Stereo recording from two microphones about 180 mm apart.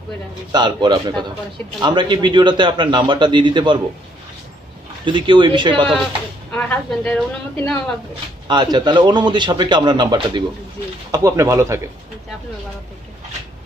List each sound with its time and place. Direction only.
0.5 s a man's voice: 25° right (ahead or behind)
5.0 s a man's voice: 25° right (ahead or behind)
6.5 s a woman's voice: 10° left (ahead or behind)
8.5 s a man's voice: 25° right (ahead or behind)